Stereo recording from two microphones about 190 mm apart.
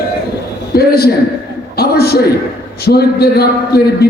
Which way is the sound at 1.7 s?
55° left (ahead or behind).